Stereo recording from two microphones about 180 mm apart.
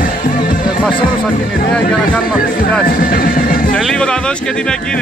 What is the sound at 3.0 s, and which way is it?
Speech, 50° left (ahead or behind).